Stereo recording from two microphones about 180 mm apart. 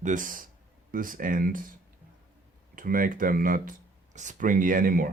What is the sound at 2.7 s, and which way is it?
A man's voice, 50° right (ahead or behind).